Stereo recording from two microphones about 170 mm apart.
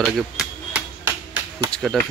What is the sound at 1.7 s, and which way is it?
Chop, centre (ahead or behind).